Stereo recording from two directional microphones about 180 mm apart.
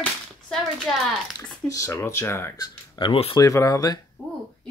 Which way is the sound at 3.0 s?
30° left (ahead or behind).